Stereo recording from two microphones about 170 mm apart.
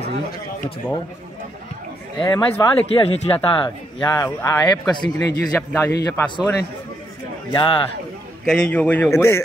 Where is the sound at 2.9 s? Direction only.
35° left (ahead or behind).